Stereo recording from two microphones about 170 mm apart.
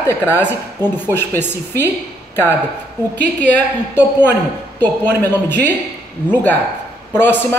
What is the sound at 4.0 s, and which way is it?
A woman's voice, 10° left (ahead or behind).